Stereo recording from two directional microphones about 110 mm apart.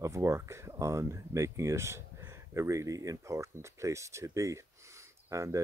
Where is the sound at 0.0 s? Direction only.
25° right (ahead or behind).